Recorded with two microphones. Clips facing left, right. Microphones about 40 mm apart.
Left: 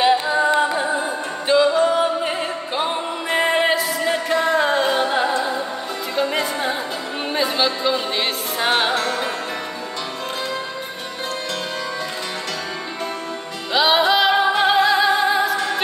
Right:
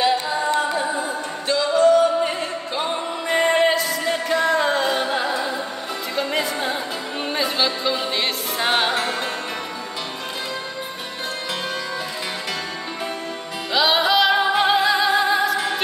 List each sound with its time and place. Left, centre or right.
0.0 s music: centre
9.0 s music: centre
13.7 s music: centre